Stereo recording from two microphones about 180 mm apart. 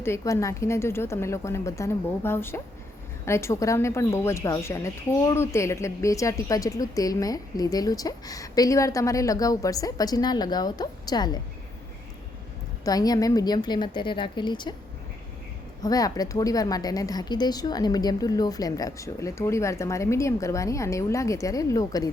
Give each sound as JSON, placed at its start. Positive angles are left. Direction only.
{"t": 0.0, "sound": "a woman's voice", "side_deg": 15}
{"t": 12.8, "sound": "a woman's voice", "side_deg": 20}
{"t": 15.8, "sound": "a woman's voice", "side_deg": 20}